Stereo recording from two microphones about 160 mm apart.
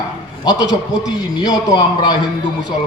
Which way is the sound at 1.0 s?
25° left (ahead or behind).